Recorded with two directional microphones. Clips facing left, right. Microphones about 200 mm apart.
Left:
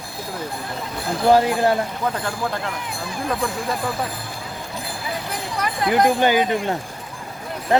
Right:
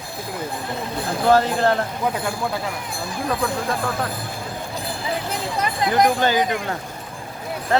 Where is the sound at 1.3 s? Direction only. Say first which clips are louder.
Left 1 dB; 10° left (ahead or behind).